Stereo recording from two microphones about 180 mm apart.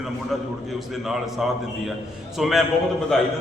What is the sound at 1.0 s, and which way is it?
A man's voice, centre (ahead or behind).